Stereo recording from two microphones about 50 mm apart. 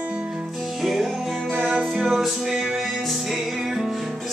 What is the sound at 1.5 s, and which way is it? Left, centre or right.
Music, centre.